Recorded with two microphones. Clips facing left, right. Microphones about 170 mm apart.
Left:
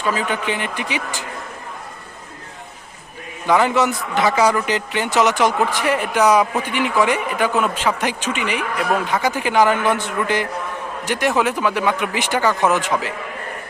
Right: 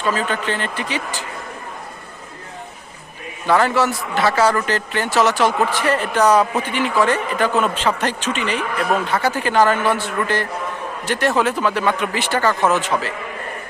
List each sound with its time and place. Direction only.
0.0 s speech: 15° left (ahead or behind)
3.4 s speech: 15° left (ahead or behind)